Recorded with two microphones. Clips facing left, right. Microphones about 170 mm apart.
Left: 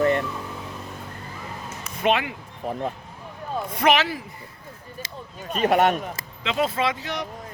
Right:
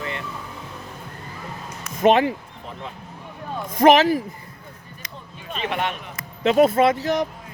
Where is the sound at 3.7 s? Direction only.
45° right (ahead or behind).